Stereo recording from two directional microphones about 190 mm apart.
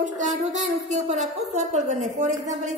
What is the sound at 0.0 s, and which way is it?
A woman's voice, 40° right (ahead or behind).